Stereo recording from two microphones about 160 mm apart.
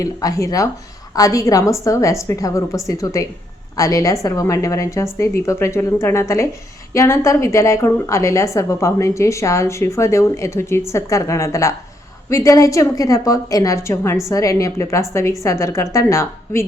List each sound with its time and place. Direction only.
0.0 s a woman's voice: 20° left (ahead or behind)